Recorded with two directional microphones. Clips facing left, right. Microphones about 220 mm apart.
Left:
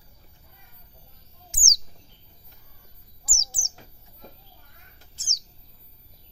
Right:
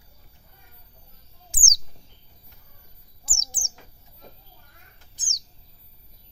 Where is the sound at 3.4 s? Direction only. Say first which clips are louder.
Right 3 dB; 15° right (ahead or behind).